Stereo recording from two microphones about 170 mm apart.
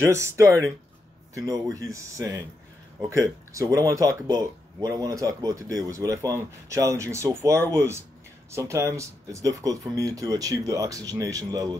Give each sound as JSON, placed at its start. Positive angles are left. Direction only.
{"t": 0.0, "sound": "speech", "side_deg": -15}